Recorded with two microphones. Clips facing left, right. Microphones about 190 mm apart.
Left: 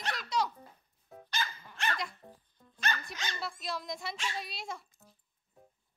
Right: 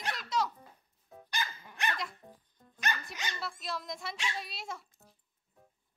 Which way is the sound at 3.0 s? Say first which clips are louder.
Even; 15° right (ahead or behind).